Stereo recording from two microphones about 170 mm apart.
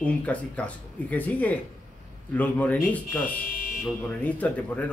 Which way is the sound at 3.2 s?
55° left (ahead or behind).